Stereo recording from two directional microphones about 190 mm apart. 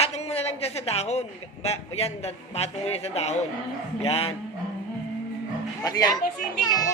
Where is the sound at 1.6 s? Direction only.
35° left (ahead or behind).